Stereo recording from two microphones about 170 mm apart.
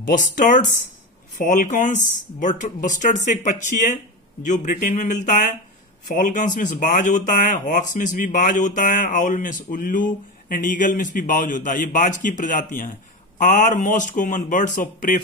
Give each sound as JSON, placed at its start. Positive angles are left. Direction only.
{"t": 0.0, "sound": "speech", "side_deg": 50}